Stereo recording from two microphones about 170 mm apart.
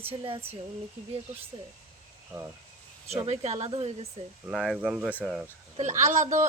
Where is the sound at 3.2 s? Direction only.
40° right (ahead or behind).